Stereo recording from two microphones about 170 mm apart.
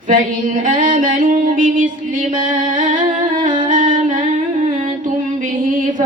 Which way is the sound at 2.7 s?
50° right (ahead or behind).